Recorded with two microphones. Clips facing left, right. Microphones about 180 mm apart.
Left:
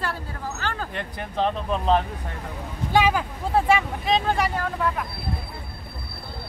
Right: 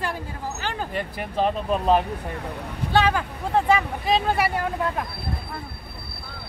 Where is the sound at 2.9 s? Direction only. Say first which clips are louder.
Even; 10° left (ahead or behind); by 4.5 s 5° right (ahead or behind).